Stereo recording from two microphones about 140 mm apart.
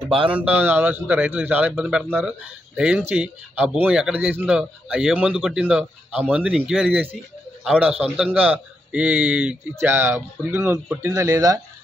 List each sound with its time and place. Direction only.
0.3 s a man's voice: 10° right (ahead or behind)